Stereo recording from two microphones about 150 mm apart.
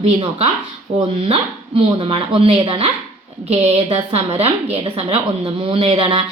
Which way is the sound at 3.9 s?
40° right (ahead or behind).